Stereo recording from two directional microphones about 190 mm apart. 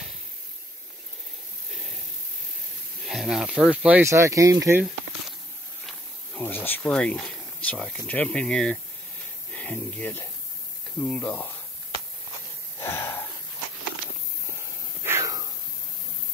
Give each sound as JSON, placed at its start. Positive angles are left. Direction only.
{"t": 3.1, "sound": "speech", "side_deg": 0}
{"t": 5.9, "sound": "speech", "side_deg": 10}
{"t": 12.8, "sound": "wheeze", "side_deg": 15}
{"t": 15.0, "sound": "a sound", "side_deg": -15}